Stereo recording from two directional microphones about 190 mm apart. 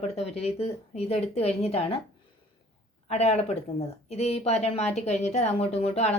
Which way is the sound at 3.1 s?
35° left (ahead or behind).